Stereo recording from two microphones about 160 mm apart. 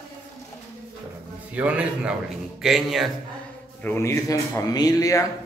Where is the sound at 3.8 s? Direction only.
15° left (ahead or behind).